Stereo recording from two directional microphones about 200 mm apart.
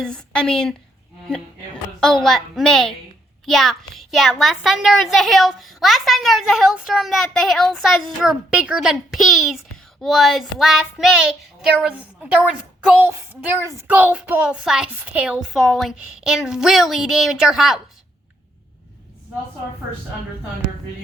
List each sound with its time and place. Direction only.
0.0 s a child's voice: 5° left (ahead or behind)